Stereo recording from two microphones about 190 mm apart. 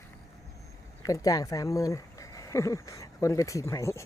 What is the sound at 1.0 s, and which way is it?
Speech, 20° left (ahead or behind).